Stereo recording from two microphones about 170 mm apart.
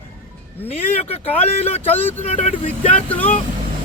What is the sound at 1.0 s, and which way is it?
Speech, 35° left (ahead or behind).